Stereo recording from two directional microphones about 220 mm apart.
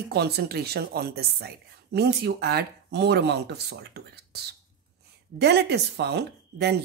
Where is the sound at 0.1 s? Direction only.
45° right (ahead or behind).